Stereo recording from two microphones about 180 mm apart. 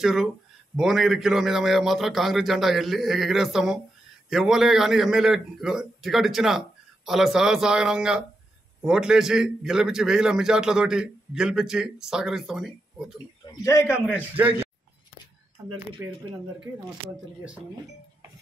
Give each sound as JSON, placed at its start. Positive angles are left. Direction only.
{"t": 0.0, "sound": "a man's voice", "side_deg": 0}
{"t": 13.7, "sound": "a man's voice", "side_deg": 15}
{"t": 14.3, "sound": "speech", "side_deg": -10}
{"t": 16.0, "sound": "speech", "side_deg": -10}